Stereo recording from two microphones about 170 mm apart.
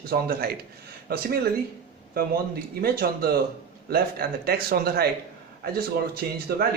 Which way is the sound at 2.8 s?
65° right (ahead or behind).